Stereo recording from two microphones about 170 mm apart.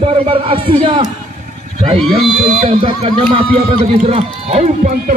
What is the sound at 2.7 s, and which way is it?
Speech, 30° right (ahead or behind).